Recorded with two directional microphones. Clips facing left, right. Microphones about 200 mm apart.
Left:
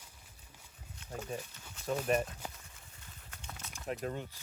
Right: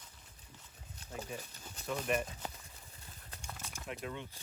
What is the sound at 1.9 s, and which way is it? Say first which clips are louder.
Speech: left 3 dB; 35° left (ahead or behind).